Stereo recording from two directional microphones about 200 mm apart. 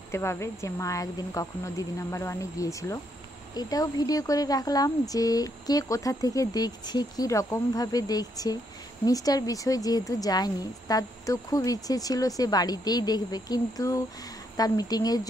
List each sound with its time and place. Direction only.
0.1 s speech: 15° left (ahead or behind)